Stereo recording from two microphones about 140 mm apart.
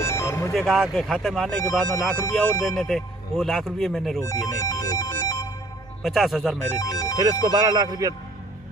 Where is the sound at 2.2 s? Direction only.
25° left (ahead or behind).